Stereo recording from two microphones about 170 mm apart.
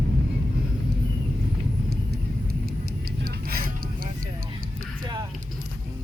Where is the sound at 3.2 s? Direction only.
60° right (ahead or behind).